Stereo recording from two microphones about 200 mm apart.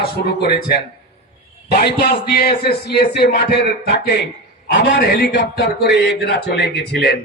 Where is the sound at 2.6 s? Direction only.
55° left (ahead or behind).